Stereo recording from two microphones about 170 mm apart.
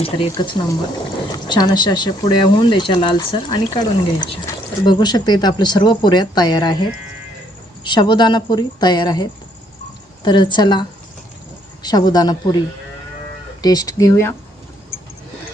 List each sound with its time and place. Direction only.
0.0 s speech: 30° left (ahead or behind)
7.9 s speech: 25° left (ahead or behind)
13.6 s speech: 20° left (ahead or behind)